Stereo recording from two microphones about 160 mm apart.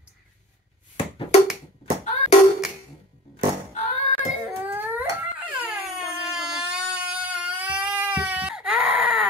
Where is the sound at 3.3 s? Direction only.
45° left (ahead or behind).